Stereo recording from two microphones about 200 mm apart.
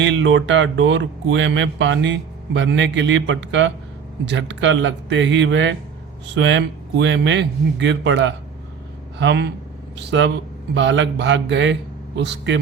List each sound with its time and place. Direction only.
0.0 s speech: 70° right (ahead or behind)